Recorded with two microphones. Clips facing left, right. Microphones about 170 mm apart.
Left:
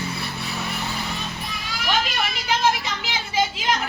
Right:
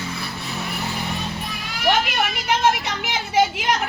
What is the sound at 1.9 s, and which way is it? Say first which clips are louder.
Children playing: right 5 dB; 65° right (ahead or behind).